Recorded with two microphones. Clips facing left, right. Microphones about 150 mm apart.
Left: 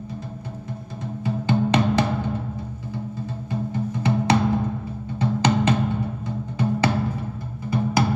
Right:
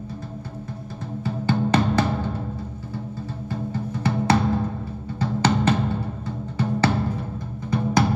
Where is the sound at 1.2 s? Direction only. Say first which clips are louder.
Left 1 dB; 20° left (ahead or behind).